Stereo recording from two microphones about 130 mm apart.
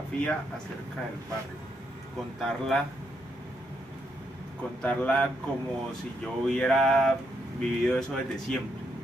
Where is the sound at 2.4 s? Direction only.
Centre (ahead or behind).